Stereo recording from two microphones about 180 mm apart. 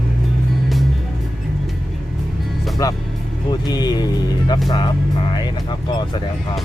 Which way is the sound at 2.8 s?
20° left (ahead or behind).